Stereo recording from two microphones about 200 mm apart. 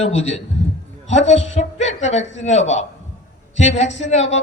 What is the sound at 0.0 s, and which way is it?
A man's voice, 30° left (ahead or behind).